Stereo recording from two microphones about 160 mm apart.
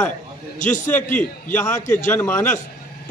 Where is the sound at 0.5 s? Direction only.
50° left (ahead or behind).